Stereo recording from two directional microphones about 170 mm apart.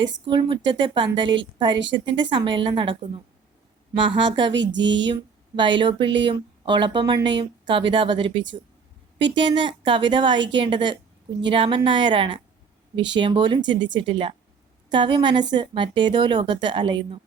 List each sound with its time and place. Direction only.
0.3 s speech: 30° right (ahead or behind)
4.5 s speech: 90° right
5.0 s speech: 25° right (ahead or behind)